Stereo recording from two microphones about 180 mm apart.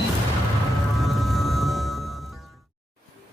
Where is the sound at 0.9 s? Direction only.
Centre (ahead or behind).